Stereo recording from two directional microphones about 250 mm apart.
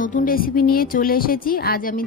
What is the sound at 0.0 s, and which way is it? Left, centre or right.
A woman's voice, left.